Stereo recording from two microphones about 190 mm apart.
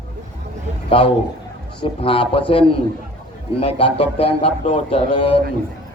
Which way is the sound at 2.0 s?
30° left (ahead or behind).